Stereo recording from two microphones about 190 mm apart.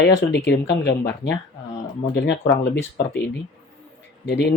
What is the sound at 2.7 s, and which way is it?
Speech, 60° left (ahead or behind).